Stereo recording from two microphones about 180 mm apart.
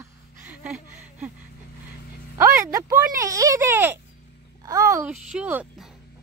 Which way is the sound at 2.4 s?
15° right (ahead or behind).